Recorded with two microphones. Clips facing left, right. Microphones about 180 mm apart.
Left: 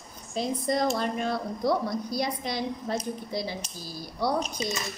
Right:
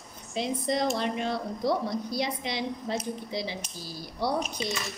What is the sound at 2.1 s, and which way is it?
Speech, 45° left (ahead or behind).